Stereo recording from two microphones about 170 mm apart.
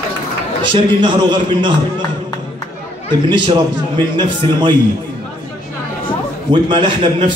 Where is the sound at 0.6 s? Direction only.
30° right (ahead or behind).